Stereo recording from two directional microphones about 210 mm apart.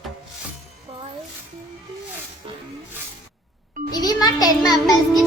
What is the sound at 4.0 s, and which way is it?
Music, 20° left (ahead or behind).